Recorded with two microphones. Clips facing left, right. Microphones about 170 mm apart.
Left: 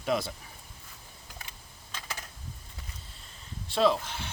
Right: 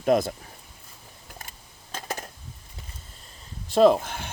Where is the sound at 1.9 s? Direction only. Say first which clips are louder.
Right 8 dB; 45° right (ahead or behind).